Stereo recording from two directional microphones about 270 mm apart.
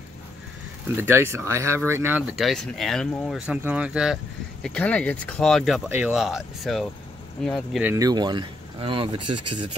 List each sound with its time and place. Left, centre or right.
0.9 s speech: centre
7.9 s speech: centre
9.2 s speech: right